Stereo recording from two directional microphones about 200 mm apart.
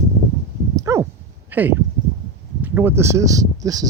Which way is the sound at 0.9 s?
15° right (ahead or behind).